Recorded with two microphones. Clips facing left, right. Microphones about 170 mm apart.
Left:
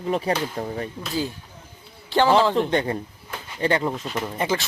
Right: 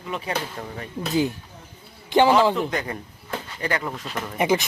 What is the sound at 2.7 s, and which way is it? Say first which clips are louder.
Speech: left 5 dB; 30° left (ahead or behind).